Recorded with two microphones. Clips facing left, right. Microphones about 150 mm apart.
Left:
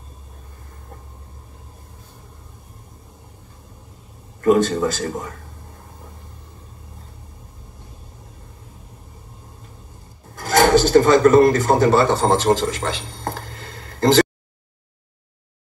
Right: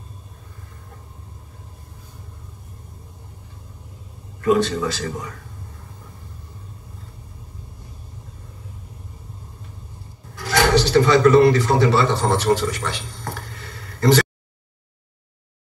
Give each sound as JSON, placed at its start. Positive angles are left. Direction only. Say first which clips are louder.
{"t": 4.4, "sound": "a man's voice", "louder": "left 3 dB", "side_deg": 45}
{"t": 10.3, "sound": "speech", "louder": "left 3 dB", "side_deg": 45}